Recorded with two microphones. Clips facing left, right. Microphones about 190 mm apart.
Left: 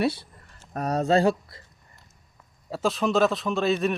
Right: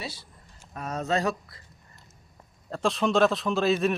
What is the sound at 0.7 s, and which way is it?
Speech, 40° left (ahead or behind).